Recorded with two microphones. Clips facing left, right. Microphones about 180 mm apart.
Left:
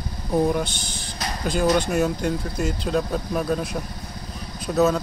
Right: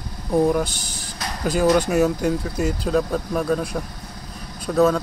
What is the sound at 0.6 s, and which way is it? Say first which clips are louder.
Speech: right 1 dB; 40° right (ahead or behind).